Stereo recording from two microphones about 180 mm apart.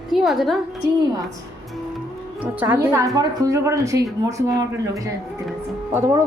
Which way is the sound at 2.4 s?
10° right (ahead or behind).